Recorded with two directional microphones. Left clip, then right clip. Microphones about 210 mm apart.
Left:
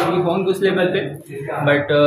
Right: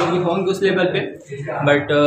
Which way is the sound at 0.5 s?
5° right (ahead or behind).